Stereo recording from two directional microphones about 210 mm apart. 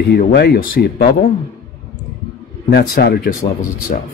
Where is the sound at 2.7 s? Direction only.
50° left (ahead or behind).